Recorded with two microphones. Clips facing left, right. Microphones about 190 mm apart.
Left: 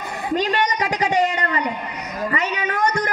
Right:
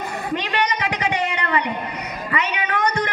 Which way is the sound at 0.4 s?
40° left (ahead or behind).